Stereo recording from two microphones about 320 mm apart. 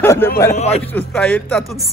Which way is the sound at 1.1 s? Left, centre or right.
Centre.